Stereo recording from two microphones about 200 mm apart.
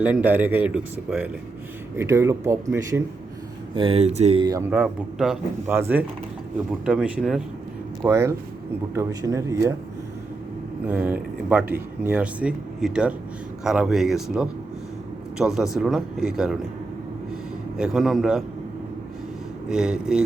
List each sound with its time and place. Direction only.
0.0 s speech: 10° right (ahead or behind)
3.8 s speech: 30° right (ahead or behind)
4.7 s speech: 5° right (ahead or behind)
10.8 s speech: 10° right (ahead or behind)
17.7 s speech: centre (ahead or behind)
19.6 s speech: 5° right (ahead or behind)